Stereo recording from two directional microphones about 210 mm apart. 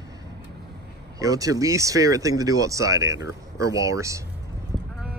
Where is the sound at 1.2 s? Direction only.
15° right (ahead or behind).